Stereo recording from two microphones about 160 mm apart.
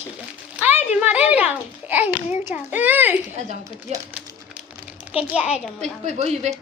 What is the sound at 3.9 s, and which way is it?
Speech, 45° right (ahead or behind).